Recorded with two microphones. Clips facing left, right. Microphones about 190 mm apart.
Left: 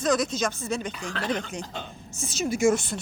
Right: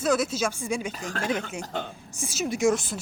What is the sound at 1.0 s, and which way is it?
Speech, 45° right (ahead or behind).